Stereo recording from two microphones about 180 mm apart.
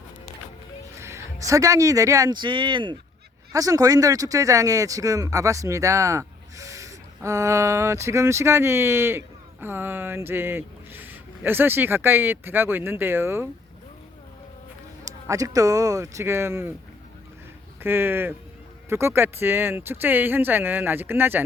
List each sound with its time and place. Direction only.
0.9 s speech: 15° right (ahead or behind)
15.3 s speech: 20° right (ahead or behind)
17.8 s speech: 10° right (ahead or behind)